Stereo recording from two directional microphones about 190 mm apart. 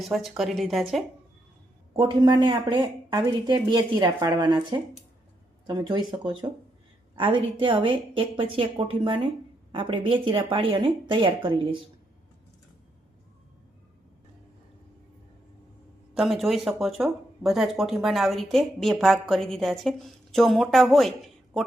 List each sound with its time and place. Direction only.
0.0 s a woman's voice: centre (ahead or behind)
2.0 s speech: 25° right (ahead or behind)
5.6 s speech: 25° right (ahead or behind)
16.1 s a woman's voice: centre (ahead or behind)